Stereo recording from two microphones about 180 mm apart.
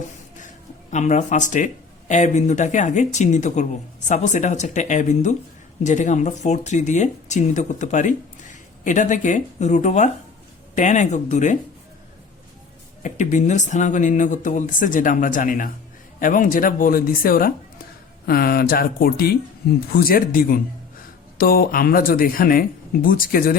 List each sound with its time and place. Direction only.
0.4 s speech: 40° left (ahead or behind)
13.0 s speech: 45° left (ahead or behind)